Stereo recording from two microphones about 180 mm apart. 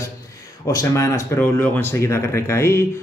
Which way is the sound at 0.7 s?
20° left (ahead or behind).